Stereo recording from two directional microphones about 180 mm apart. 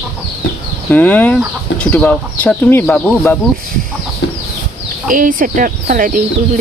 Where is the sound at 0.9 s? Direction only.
10° left (ahead or behind).